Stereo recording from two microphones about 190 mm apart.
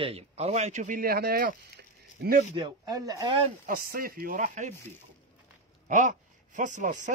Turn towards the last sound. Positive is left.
turn(degrees=-40)  # may be behind; listen again after turning